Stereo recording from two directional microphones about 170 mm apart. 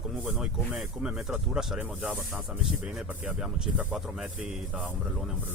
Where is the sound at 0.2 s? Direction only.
10° right (ahead or behind).